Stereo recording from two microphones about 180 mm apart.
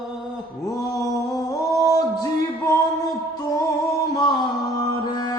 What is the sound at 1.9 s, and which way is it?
Music, 20° left (ahead or behind).